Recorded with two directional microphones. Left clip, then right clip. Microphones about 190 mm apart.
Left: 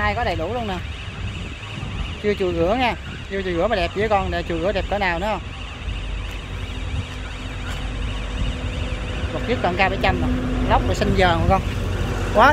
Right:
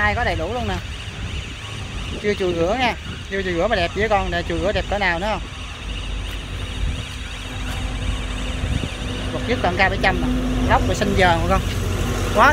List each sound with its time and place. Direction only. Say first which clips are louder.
0.0 s speech: right 2 dB; centre (ahead or behind)
2.2 s speech: even; 5° left (ahead or behind)
9.5 s speech: right 1 dB; 5° left (ahead or behind)